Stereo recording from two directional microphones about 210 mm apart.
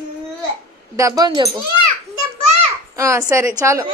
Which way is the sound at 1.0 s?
15° right (ahead or behind).